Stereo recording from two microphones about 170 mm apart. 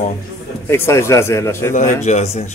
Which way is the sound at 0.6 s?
15° left (ahead or behind).